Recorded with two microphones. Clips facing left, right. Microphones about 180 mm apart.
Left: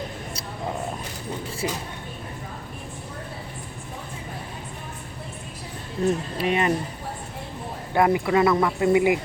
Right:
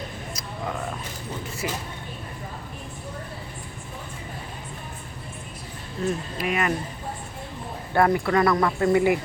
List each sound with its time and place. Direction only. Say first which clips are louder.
1.6 s speech: left 2 dB; 30° left (ahead or behind)
6.3 s speech: left 3 dB; 30° left (ahead or behind)
7.9 s speech: left 1 dB; 15° left (ahead or behind)